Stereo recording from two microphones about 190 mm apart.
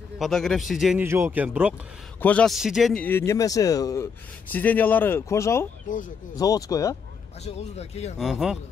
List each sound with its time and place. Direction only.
0.2 s a man's voice: centre (ahead or behind)
1.0 s speech: 15° right (ahead or behind)
2.1 s a man's voice: 10° left (ahead or behind)
5.9 s speech: 45° left (ahead or behind)
6.3 s a man's voice: 20° left (ahead or behind)
7.4 s a man's voice: 35° left (ahead or behind)
8.2 s a man's voice: centre (ahead or behind)